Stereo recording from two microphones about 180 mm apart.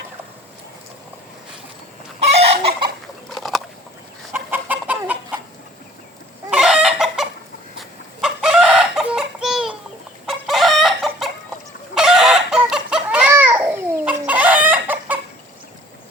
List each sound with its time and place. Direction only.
2.2 s chicken: 35° right (ahead or behind)
3.2 s a sound: centre (ahead or behind)
4.3 s chicken: 10° right (ahead or behind)
6.5 s chicken: 5° right (ahead or behind)